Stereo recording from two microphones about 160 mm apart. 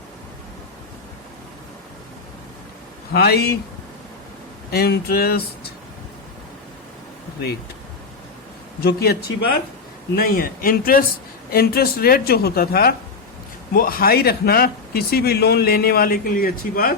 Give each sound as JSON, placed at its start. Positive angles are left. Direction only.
{"t": 3.1, "sound": "a man's voice", "side_deg": 80}
{"t": 4.7, "sound": "speech", "side_deg": 80}
{"t": 8.8, "sound": "a man's voice", "side_deg": 80}
{"t": 10.2, "sound": "a man's voice", "side_deg": 65}